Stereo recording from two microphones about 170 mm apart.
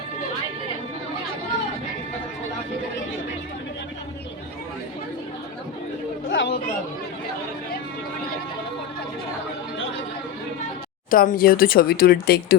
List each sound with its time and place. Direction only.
6.3 s chatter: 90° left
11.1 s speech: 55° left (ahead or behind)